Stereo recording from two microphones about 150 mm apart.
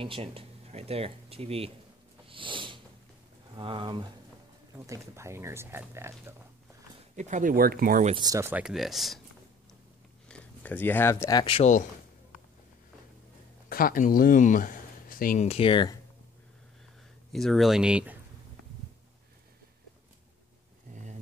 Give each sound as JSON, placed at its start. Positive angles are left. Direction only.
{"t": 0.0, "sound": "speech", "side_deg": -40}
{"t": 2.2, "sound": "a sound", "side_deg": -35}
{"t": 3.5, "sound": "speech", "side_deg": -35}
{"t": 4.7, "sound": "speech", "side_deg": -20}
{"t": 7.2, "sound": "speech", "side_deg": -55}
{"t": 8.2, "sound": "speech", "side_deg": -20}
{"t": 8.6, "sound": "speech", "side_deg": 0}
{"t": 10.2, "sound": "speech", "side_deg": 10}
{"t": 11.4, "sound": "speech", "side_deg": 40}
{"t": 13.7, "sound": "speech", "side_deg": 75}
{"t": 15.4, "sound": "speech", "side_deg": 40}
{"t": 17.3, "sound": "speech", "side_deg": 0}
{"t": 20.9, "sound": "a sound", "side_deg": -55}